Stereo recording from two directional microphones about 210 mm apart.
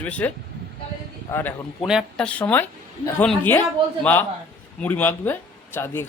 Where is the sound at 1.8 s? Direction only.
Centre (ahead or behind).